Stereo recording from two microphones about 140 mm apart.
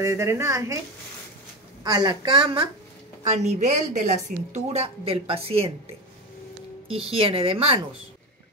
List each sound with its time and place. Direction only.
0.0 s a woman's voice: 20° right (ahead or behind)
1.8 s a woman's voice: 30° right (ahead or behind)
3.3 s a woman's voice: 55° right (ahead or behind)
6.9 s a woman's voice: 40° right (ahead or behind)